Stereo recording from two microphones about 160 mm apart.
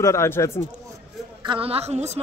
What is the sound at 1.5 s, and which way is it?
Speech, 35° right (ahead or behind).